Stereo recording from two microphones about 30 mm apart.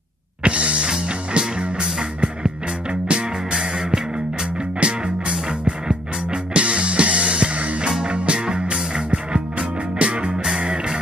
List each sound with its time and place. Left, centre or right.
0.4 s music: right
3.5 s music: right
4.7 s music: right
6.6 s music: right
8.0 s music: right